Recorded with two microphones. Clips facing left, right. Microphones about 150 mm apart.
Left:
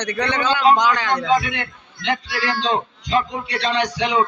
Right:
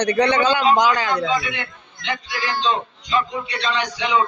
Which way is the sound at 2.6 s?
80° left.